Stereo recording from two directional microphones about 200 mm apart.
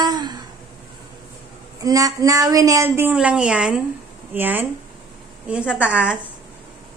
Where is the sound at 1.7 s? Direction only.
15° right (ahead or behind).